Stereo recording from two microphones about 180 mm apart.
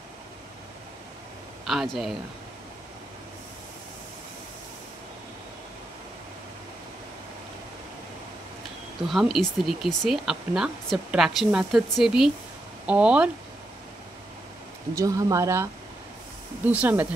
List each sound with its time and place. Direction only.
1.7 s speech: centre (ahead or behind)
9.1 s speech: centre (ahead or behind)
15.0 s speech: 20° right (ahead or behind)